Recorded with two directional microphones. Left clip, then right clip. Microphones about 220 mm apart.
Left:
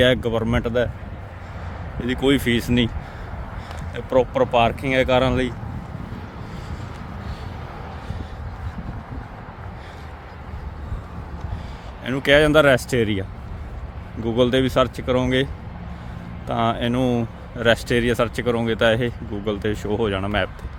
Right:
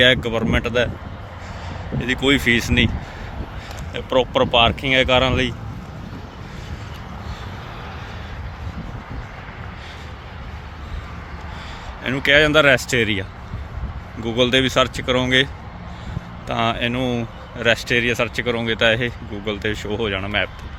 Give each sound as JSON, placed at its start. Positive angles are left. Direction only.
{"t": 0.0, "sound": "speech", "side_deg": 15}
{"t": 2.0, "sound": "speech", "side_deg": 10}
{"t": 3.9, "sound": "speech", "side_deg": 10}
{"t": 12.0, "sound": "speech", "side_deg": 15}
{"t": 14.3, "sound": "speech", "side_deg": 15}
{"t": 16.5, "sound": "speech", "side_deg": 15}